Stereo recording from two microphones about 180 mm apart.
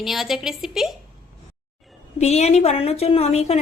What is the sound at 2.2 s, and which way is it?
A woman's voice, 40° left (ahead or behind).